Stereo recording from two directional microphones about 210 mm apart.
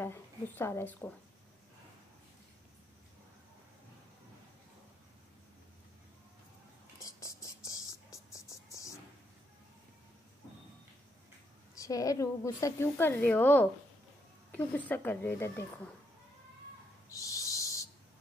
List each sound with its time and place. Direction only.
0.0 s a woman's voice: 10° left (ahead or behind)
7.0 s music: 15° left (ahead or behind)
11.7 s a woman's voice: 15° left (ahead or behind)
14.9 s a woman's voice: 10° left (ahead or behind)
17.1 s owl: 15° left (ahead or behind)